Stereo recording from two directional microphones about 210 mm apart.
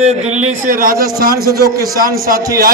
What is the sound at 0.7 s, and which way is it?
A man's voice, 40° right (ahead or behind).